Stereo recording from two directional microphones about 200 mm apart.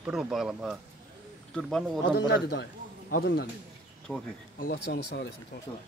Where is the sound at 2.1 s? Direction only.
55° left (ahead or behind).